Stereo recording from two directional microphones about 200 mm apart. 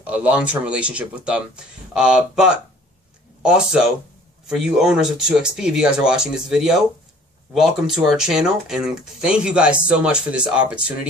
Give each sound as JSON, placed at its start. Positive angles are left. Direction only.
{"t": 0.0, "sound": "speech", "side_deg": -5}